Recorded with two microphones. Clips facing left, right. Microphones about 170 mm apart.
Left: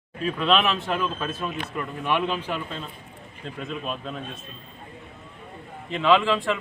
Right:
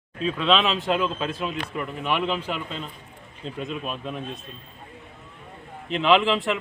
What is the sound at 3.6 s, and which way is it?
Speech, 10° right (ahead or behind).